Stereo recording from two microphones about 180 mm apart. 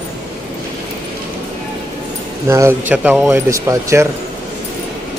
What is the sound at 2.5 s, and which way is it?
Speech, 15° right (ahead or behind).